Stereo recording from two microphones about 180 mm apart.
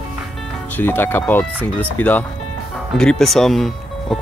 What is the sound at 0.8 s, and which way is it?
Speech, 10° left (ahead or behind).